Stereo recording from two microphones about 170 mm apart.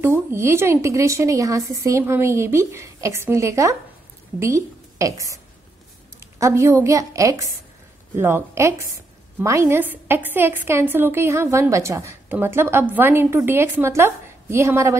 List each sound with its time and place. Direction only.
0.0 s a woman's voice: 15° right (ahead or behind)